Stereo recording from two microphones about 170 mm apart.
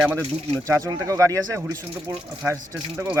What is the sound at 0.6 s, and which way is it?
Speech, 20° right (ahead or behind).